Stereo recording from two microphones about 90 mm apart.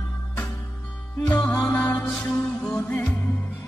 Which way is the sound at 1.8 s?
15° left (ahead or behind).